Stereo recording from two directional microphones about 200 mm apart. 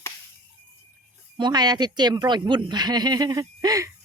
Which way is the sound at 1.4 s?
20° right (ahead or behind).